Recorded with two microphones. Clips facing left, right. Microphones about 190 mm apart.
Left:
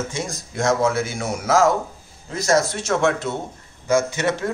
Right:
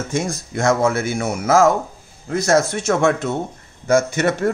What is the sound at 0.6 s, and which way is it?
A man's voice, 55° right (ahead or behind).